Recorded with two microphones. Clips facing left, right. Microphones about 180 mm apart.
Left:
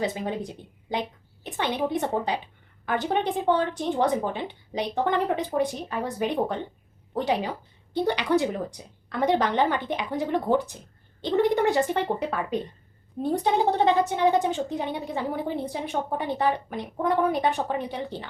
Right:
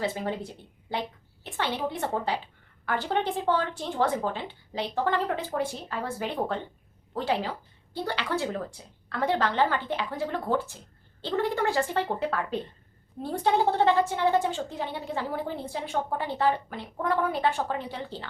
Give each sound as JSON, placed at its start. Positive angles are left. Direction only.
{"t": 0.0, "sound": "a woman's voice", "side_deg": 15}